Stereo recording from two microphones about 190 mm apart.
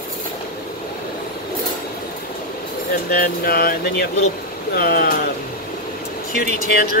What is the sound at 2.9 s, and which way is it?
Speech, 50° left (ahead or behind).